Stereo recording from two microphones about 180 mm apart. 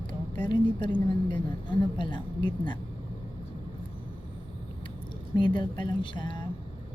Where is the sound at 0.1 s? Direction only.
25° left (ahead or behind).